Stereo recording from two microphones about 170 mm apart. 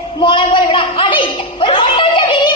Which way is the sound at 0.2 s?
30° left (ahead or behind).